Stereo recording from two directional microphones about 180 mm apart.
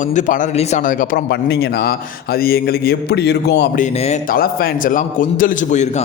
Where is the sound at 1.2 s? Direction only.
65° left (ahead or behind).